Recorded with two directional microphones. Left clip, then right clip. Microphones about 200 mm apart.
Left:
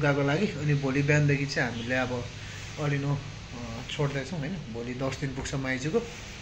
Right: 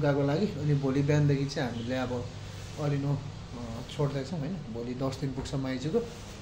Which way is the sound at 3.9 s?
5° right (ahead or behind).